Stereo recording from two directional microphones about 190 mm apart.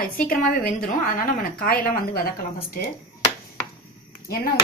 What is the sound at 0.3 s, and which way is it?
A woman's voice, 50° left (ahead or behind).